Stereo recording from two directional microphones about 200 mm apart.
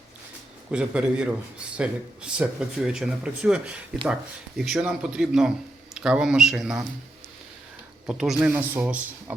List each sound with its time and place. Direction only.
0.7 s speech: 5° right (ahead or behind)
8.0 s speech: 5° right (ahead or behind)